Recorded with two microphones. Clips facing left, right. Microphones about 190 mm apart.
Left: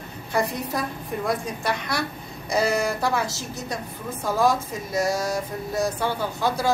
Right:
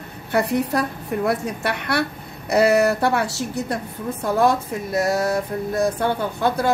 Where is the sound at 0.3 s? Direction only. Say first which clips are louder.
Right 5 dB; 70° right (ahead or behind).